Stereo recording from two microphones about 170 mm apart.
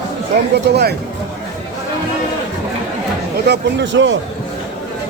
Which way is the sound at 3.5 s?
90° right.